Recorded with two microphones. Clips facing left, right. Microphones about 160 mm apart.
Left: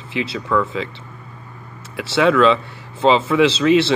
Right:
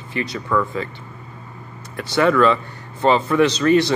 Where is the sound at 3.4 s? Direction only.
90° left.